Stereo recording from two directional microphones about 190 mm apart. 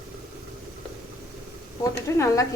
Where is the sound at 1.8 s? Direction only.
15° left (ahead or behind).